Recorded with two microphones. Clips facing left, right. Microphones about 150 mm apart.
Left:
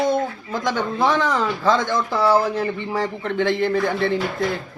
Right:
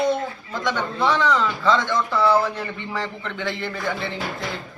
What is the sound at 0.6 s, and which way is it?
A man's voice, 45° left (ahead or behind).